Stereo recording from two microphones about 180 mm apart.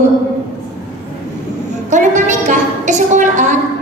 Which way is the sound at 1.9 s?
40° right (ahead or behind).